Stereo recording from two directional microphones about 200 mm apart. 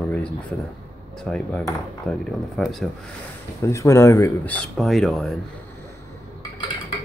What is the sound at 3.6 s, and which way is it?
Speech, 15° left (ahead or behind).